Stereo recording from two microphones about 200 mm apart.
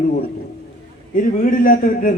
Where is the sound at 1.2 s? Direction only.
45° left (ahead or behind).